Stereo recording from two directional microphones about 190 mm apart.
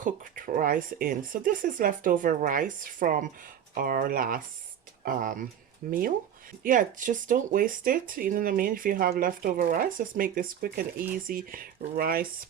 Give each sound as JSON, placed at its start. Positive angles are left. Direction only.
{"t": 0.0, "sound": "speech", "side_deg": -45}